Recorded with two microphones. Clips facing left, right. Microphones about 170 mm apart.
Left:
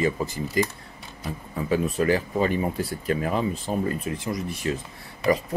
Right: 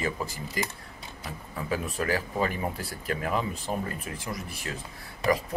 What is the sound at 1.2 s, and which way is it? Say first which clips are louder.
Speech: left 6 dB; 25° left (ahead or behind).